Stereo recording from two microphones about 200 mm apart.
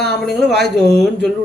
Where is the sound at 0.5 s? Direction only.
55° right (ahead or behind).